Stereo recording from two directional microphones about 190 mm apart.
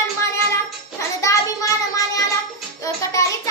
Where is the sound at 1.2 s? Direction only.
15° left (ahead or behind).